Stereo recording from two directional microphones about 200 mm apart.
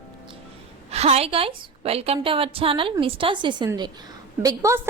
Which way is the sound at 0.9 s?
30° right (ahead or behind).